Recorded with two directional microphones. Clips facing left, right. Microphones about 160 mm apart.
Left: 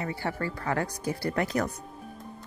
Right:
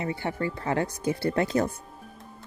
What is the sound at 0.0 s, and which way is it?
Speech, 20° right (ahead or behind).